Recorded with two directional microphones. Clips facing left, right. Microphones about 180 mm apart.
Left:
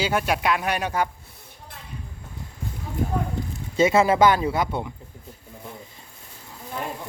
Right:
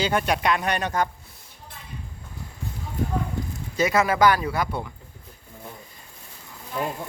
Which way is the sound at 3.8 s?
25° left (ahead or behind).